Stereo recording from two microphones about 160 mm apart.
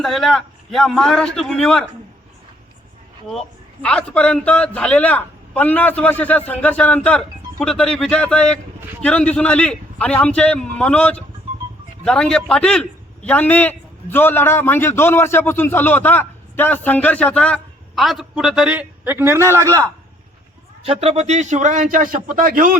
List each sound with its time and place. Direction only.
0.0 s a man's voice: centre (ahead or behind)
3.8 s a man's voice: 5° left (ahead or behind); by 19.6 s 15° right (ahead or behind)
20.8 s a man's voice: 40° right (ahead or behind); by 22.8 s 60° right (ahead or behind)